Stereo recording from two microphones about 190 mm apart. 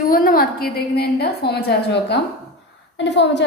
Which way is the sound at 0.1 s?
50° left (ahead or behind).